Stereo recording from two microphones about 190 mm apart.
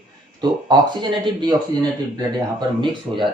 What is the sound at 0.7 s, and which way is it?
Speech, 25° right (ahead or behind).